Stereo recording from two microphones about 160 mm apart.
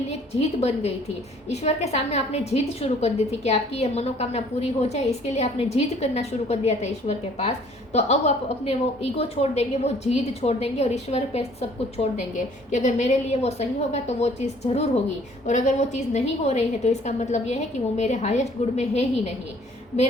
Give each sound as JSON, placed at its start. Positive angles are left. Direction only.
{"t": 0.1, "sound": "a woman's voice", "side_deg": 40}